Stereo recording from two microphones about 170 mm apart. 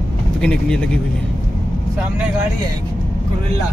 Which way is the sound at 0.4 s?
5° left (ahead or behind).